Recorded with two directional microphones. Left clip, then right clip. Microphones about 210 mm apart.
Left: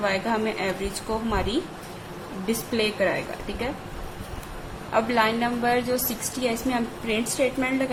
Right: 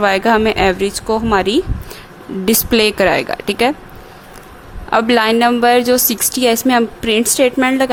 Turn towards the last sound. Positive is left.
turn(degrees=-55)  # may be behind; listen again after turning